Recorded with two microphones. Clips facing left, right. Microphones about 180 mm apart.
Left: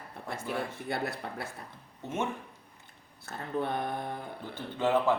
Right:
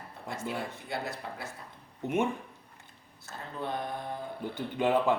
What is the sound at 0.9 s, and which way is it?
Speech, 60° left (ahead or behind).